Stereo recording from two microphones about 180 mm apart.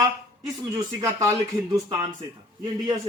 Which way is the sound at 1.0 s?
20° right (ahead or behind).